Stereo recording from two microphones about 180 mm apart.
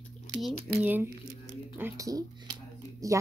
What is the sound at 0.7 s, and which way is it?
Speech, 10° right (ahead or behind).